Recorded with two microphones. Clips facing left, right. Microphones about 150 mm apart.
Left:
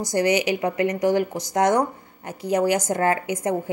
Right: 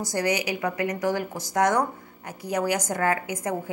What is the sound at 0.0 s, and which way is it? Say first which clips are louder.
A woman's voice: left 5 dB; 20° left (ahead or behind).